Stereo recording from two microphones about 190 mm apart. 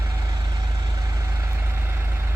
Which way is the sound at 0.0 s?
20° right (ahead or behind).